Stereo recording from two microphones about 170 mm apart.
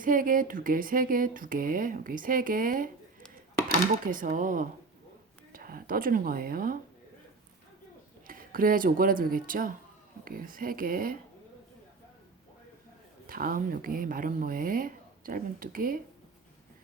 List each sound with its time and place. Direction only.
0.0 s speech: 55° right (ahead or behind)
8.3 s speech: 55° right (ahead or behind)
13.2 s speech: 60° right (ahead or behind)